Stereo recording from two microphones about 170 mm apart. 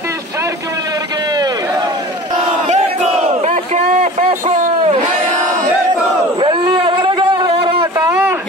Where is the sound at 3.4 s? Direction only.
40° right (ahead or behind).